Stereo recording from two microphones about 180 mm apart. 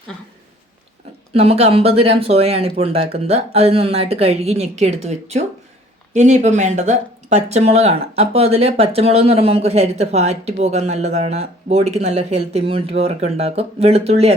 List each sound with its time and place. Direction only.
1.3 s speech: 35° right (ahead or behind)